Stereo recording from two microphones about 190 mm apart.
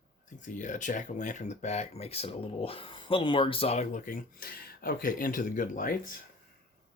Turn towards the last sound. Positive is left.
turn(degrees=45)  # may be behind; listen again after turning